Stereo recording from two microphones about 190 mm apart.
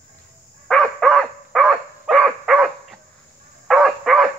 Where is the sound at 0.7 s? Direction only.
Centre (ahead or behind).